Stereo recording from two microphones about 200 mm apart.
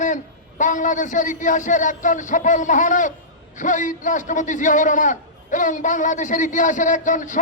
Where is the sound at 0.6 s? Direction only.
40° left (ahead or behind).